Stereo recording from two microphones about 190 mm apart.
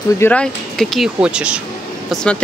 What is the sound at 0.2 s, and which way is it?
Speech, 5° left (ahead or behind).